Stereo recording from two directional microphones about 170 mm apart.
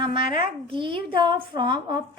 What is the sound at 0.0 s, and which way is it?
A woman's voice, 30° right (ahead or behind).